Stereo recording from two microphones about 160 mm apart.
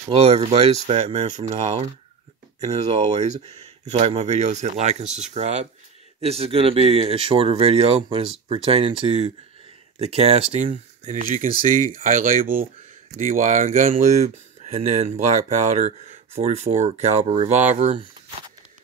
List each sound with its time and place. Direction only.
0.1 s speech: 40° right (ahead or behind)